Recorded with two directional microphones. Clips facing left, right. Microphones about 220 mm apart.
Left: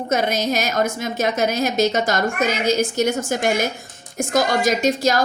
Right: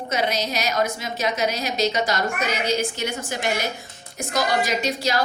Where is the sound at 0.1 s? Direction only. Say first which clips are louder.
Left 4 dB; 50° left (ahead or behind).